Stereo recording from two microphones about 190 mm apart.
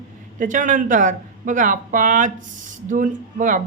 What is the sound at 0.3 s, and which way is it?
Speech, 40° right (ahead or behind).